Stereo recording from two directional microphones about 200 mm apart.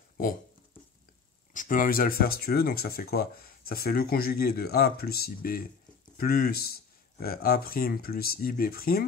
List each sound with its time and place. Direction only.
1.5 s speech: 40° left (ahead or behind)